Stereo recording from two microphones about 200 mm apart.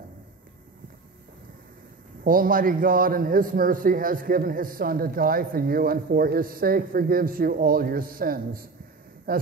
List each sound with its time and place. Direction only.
2.2 s a man's voice: 45° right (ahead or behind)